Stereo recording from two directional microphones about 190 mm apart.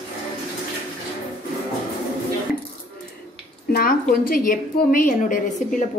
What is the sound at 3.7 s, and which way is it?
A woman's voice, 50° left (ahead or behind).